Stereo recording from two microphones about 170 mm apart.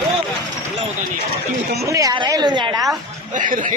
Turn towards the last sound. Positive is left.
turn(degrees=-50)  # may be behind; listen again after turning